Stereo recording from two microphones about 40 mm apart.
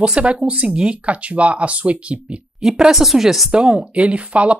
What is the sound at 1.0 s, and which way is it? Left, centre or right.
Speech, right.